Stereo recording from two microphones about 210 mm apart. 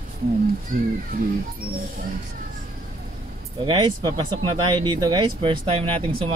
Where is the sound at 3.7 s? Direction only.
20° right (ahead or behind).